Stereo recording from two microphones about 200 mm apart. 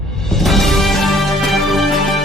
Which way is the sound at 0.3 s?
Centre (ahead or behind).